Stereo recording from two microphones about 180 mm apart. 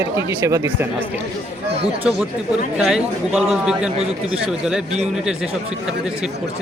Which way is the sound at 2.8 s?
Centre (ahead or behind).